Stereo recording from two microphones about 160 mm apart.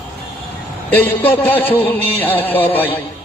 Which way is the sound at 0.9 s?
10° left (ahead or behind).